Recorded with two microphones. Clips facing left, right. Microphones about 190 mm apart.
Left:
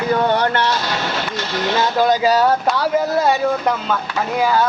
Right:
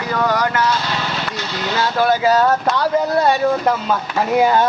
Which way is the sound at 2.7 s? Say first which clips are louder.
Even; centre (ahead or behind).